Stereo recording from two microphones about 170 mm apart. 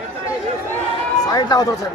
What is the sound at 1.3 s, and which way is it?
Speech, 20° left (ahead or behind).